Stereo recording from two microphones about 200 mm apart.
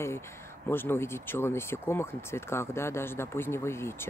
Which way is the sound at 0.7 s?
10° left (ahead or behind).